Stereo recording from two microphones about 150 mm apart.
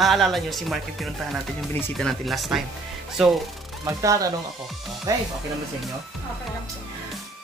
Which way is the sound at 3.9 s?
20° right (ahead or behind).